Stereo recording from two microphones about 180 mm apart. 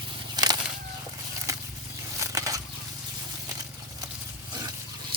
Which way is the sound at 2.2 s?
20° right (ahead or behind).